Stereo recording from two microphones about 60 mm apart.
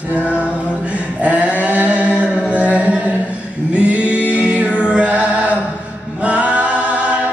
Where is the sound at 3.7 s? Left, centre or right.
Centre.